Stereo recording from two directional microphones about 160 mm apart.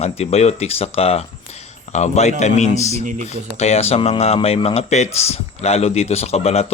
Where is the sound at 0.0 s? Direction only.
40° left (ahead or behind).